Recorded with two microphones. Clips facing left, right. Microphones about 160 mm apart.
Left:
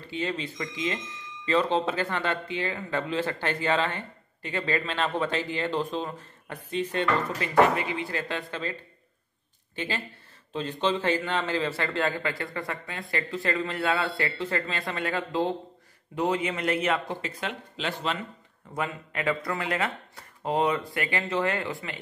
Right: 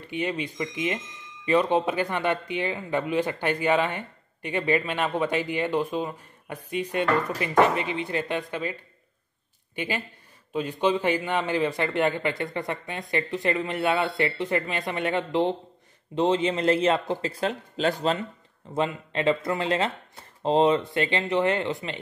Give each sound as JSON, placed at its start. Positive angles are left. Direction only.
{"t": 0.0, "sound": "speech", "side_deg": -15}
{"t": 9.8, "sound": "a man's voice", "side_deg": -15}
{"t": 18.7, "sound": "a man's voice", "side_deg": -25}